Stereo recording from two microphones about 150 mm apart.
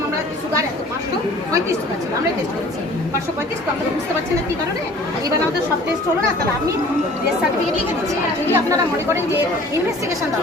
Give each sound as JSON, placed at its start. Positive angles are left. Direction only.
{"t": 8.5, "sound": "speech", "side_deg": -15}